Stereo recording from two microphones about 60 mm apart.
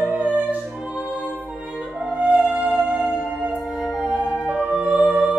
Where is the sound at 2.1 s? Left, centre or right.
Right.